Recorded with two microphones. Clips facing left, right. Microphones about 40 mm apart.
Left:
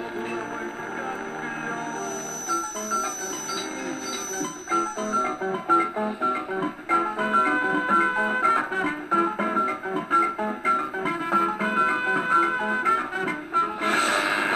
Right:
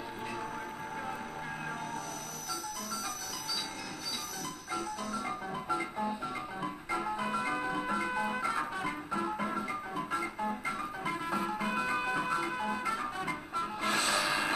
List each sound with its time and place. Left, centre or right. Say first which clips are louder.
2.5 s music: left 13 dB; left
4.6 s music: left 12 dB; left